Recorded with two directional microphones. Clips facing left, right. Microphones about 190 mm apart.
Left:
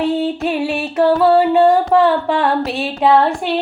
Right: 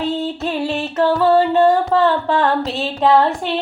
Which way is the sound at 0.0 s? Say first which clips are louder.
Left 4 dB; 15° left (ahead or behind).